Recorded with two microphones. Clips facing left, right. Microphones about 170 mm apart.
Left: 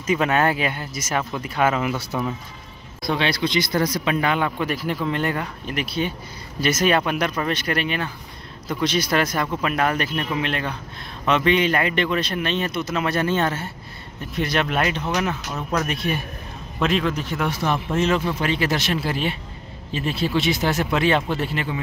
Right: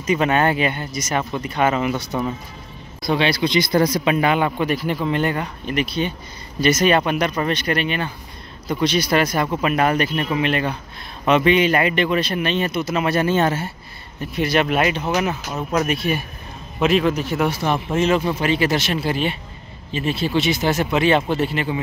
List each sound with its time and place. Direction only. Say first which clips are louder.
0.0 s speech: right 2 dB; centre (ahead or behind)
3.7 s speech: right 5 dB; 30° right (ahead or behind)
4.0 s speech: right 4 dB; 15° right (ahead or behind)
15.5 s speech: right 5 dB; 20° right (ahead or behind)
15.9 s speech: right 3 dB; 5° right (ahead or behind)